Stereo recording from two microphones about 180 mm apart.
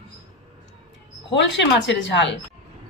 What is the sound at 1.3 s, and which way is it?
Speech, 85° left.